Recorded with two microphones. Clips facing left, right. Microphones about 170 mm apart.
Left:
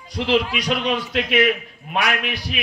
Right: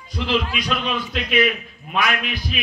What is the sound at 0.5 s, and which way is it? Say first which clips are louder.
A man's voice: left 2 dB; 75° left (ahead or behind).